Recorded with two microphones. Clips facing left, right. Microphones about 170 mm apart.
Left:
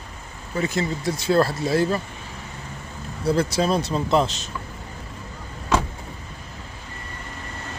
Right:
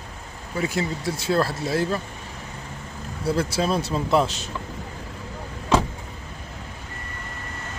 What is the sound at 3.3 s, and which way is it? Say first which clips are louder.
Speech: left 2 dB; 5° right (ahead or behind).